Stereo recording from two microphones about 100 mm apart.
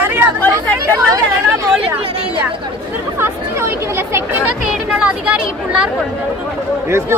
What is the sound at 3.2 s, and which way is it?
Chatter, 25° right (ahead or behind).